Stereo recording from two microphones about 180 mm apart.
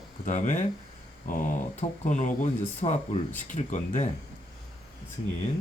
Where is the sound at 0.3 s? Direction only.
45° left (ahead or behind).